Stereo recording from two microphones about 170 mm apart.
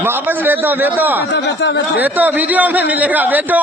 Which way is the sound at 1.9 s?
10° right (ahead or behind).